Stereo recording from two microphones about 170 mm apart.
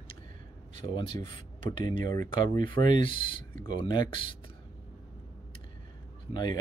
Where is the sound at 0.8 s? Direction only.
30° left (ahead or behind).